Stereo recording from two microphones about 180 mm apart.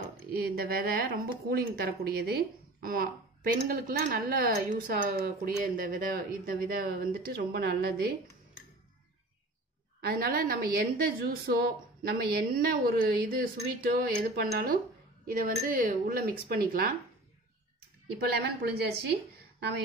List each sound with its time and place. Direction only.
0.4 s a woman's voice: 55° right (ahead or behind)
10.0 s a woman's voice: 55° right (ahead or behind)
18.4 s a woman's voice: 65° right (ahead or behind)